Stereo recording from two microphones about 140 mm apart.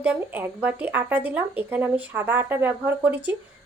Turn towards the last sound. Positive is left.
turn(degrees=-10)  # may be behind; listen again after turning